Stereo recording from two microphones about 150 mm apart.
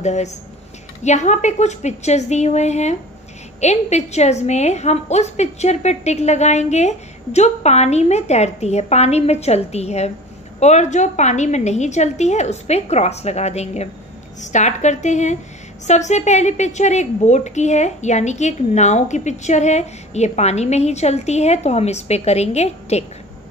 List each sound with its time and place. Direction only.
0.0 s a woman's voice: 50° left (ahead or behind)